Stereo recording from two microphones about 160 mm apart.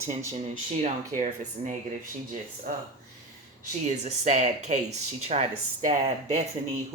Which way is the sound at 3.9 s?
45° right (ahead or behind).